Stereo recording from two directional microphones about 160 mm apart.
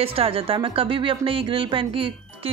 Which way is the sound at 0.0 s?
35° right (ahead or behind).